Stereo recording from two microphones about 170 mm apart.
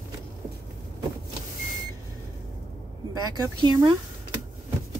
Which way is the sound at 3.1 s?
20° right (ahead or behind).